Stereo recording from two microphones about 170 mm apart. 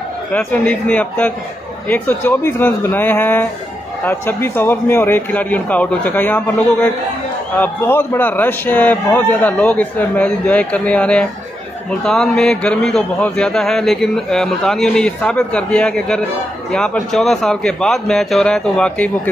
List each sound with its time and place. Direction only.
0.3 s a man's voice: 10° left (ahead or behind)